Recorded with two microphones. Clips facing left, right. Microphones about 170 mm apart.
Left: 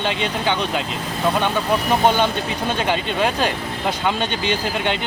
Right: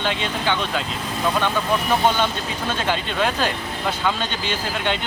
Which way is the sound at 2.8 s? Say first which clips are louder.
Left 1 dB; 15° left (ahead or behind).